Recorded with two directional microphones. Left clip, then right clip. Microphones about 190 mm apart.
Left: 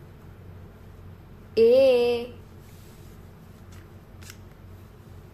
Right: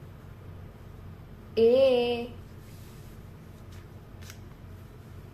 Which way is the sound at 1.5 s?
40° left (ahead or behind).